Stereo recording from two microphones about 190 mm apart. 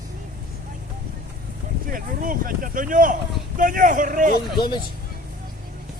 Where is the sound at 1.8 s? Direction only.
45° right (ahead or behind).